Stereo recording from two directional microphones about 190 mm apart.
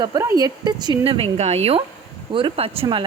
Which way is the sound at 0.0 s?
20° right (ahead or behind).